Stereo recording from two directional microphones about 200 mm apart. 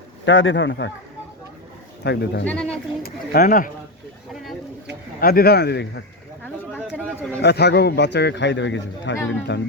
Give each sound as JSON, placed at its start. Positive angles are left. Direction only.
{"t": 0.3, "sound": "a man's voice", "side_deg": 70}
{"t": 2.0, "sound": "a man's voice", "side_deg": 55}
{"t": 2.5, "sound": "speech", "side_deg": 5}
{"t": 3.0, "sound": "a man's voice", "side_deg": 45}
{"t": 5.2, "sound": "a man's voice", "side_deg": 50}
{"t": 7.4, "sound": "a man's voice", "side_deg": 55}